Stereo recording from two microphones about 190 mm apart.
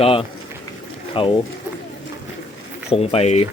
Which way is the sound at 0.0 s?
30° left (ahead or behind).